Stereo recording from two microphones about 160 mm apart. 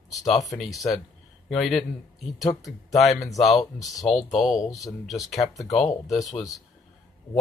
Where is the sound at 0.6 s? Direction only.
Centre (ahead or behind).